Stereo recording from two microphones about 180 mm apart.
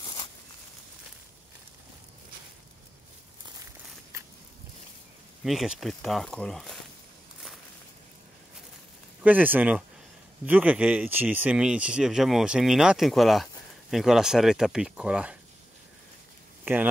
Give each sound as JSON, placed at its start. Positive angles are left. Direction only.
{"t": 0.0, "sound": "a sound", "side_deg": 25}
{"t": 5.4, "sound": "speech", "side_deg": 0}
{"t": 9.2, "sound": "speech", "side_deg": -10}
{"t": 16.6, "sound": "speech", "side_deg": -10}